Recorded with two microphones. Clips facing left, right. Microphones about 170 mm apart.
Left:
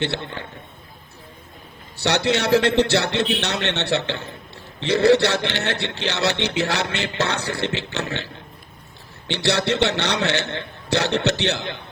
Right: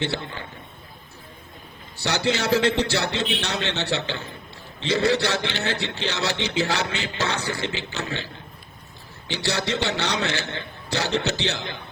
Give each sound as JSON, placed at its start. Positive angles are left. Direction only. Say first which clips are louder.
{"t": 0.0, "sound": "a man's voice", "louder": "left 2 dB", "side_deg": 70}
{"t": 2.0, "sound": "a man's voice", "louder": "left 3 dB", "side_deg": 70}